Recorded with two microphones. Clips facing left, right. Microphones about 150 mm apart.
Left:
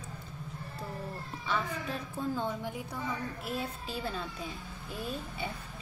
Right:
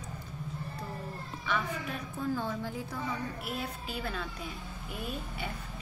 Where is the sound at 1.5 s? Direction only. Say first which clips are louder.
Even; 30° left (ahead or behind).